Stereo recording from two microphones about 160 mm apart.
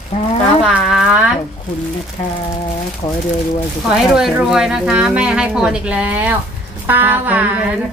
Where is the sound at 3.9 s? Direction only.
Centre (ahead or behind).